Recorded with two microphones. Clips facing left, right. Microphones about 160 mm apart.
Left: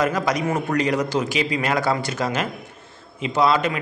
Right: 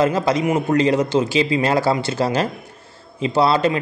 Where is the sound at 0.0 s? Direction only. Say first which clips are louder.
Right 4 dB; 25° right (ahead or behind).